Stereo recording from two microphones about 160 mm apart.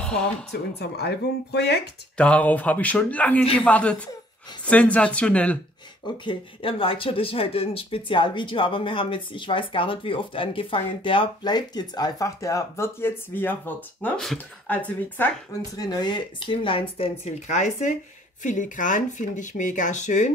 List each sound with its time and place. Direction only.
0.0 s a sound: 5° left (ahead or behind)
0.5 s speech: 90° left
2.1 s speech: 10° left (ahead or behind)
6.2 s speech: 35° left (ahead or behind); by 15.2 s 10° left (ahead or behind)
15.8 s speech: 25° left (ahead or behind); by 20.3 s 50° left (ahead or behind)